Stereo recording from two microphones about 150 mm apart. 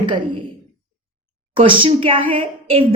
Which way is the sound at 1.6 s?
35° right (ahead or behind).